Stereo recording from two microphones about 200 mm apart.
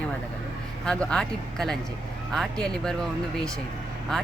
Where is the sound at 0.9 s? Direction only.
5° left (ahead or behind).